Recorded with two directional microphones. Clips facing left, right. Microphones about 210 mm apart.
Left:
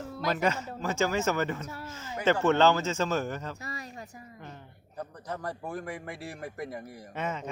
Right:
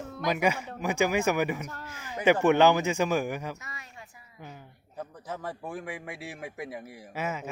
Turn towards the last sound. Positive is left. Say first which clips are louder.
# right 1 dB
turn(degrees=-5)  # may be behind; listen again after turning